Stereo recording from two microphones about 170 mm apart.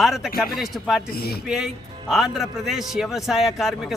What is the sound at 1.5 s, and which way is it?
A man's voice, 5° right (ahead or behind).